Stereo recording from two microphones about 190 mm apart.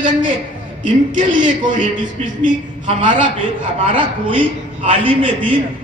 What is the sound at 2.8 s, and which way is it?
A man's voice, 25° right (ahead or behind).